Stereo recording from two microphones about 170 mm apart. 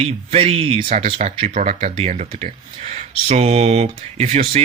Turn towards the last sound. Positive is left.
turn(degrees=-45)  # may be behind; listen again after turning